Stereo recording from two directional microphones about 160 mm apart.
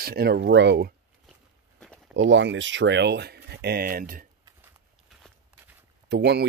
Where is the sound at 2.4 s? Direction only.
90° right; by 4.3 s 60° right (ahead or behind).